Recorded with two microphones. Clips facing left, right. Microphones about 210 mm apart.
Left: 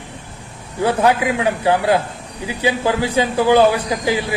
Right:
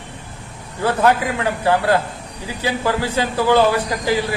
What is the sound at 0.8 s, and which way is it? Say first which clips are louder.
A man's voice: left 1 dB; 15° left (ahead or behind).